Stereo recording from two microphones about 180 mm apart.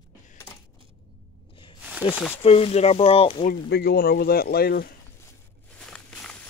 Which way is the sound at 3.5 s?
60° left (ahead or behind).